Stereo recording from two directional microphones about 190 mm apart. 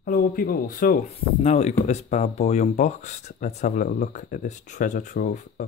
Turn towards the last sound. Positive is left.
turn(degrees=40)  # may be behind; listen again after turning